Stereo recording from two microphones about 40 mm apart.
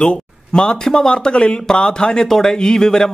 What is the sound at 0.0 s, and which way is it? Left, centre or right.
Speech, left.